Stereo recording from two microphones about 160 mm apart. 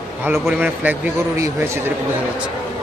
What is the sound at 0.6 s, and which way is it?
A man's voice, 10° right (ahead or behind).